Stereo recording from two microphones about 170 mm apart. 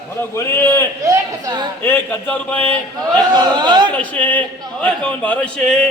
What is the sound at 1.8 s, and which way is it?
Speech, 10° left (ahead or behind).